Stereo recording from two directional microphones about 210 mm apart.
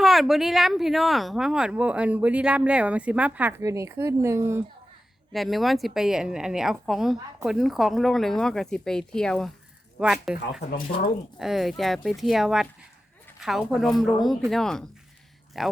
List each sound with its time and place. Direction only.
0.0 s speech: centre (ahead or behind)
5.3 s speech: centre (ahead or behind)
10.6 s speech: 45° left (ahead or behind)
11.3 s speech: centre (ahead or behind)